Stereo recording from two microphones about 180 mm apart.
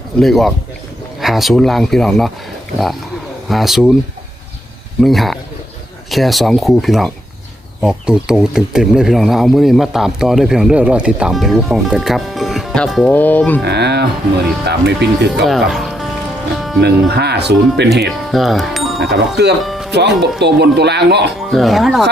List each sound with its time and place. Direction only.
0.2 s speech: centre (ahead or behind)
3.5 s speech: centre (ahead or behind)
4.9 s speech: centre (ahead or behind)
13.7 s music: 65° right (ahead or behind)
14.7 s speech: 70° right (ahead or behind)
15.4 s speech: centre (ahead or behind)
16.6 s music: centre (ahead or behind)
16.8 s speech: 65° right (ahead or behind)
18.3 s speech: centre (ahead or behind)
19.1 s speech: 70° right (ahead or behind)
19.6 s music: centre (ahead or behind)
19.9 s speech: 70° right (ahead or behind)
21.5 s speech: centre (ahead or behind)